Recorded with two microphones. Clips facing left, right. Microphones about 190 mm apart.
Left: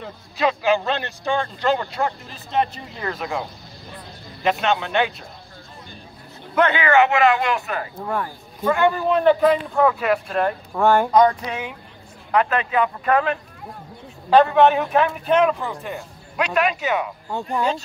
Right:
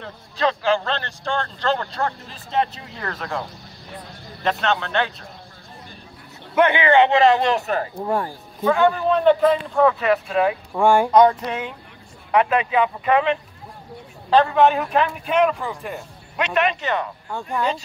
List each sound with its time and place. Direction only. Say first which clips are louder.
0.0 s speech: even; 10° left (ahead or behind)
6.6 s speech: right 2 dB; 15° right (ahead or behind)
6.9 s speech: right 1 dB; 30° right (ahead or behind)
8.6 s speech: right 1 dB; 5° left (ahead or behind)
11.1 s speech: right 2 dB; centre (ahead or behind)